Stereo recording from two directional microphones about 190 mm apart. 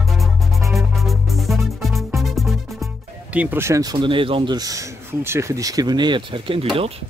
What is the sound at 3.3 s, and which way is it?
Speech, 10° right (ahead or behind).